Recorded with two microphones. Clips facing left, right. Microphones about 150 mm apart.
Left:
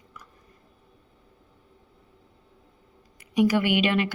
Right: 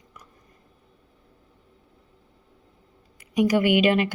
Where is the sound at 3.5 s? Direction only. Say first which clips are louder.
Right 4 dB; 45° right (ahead or behind).